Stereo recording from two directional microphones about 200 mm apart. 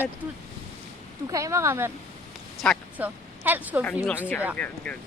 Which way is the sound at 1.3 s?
15° right (ahead or behind).